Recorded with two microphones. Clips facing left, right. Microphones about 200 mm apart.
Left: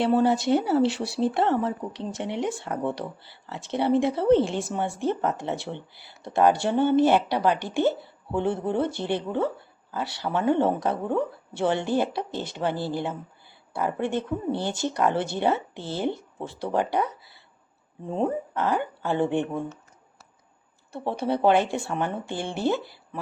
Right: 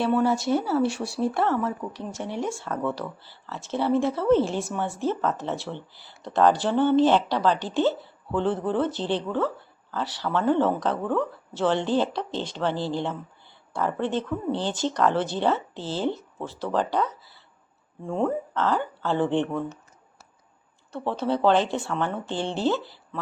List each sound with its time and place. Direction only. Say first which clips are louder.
0.2 s speech: left 2 dB; 20° left (ahead or behind)
20.9 s speech: right 1 dB; 15° left (ahead or behind)